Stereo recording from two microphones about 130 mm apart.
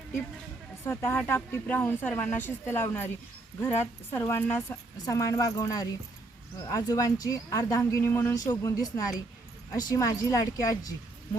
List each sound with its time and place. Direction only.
0.9 s speech: 20° left (ahead or behind)
4.1 s speech: 20° left (ahead or behind)
5.0 s speech: 25° left (ahead or behind)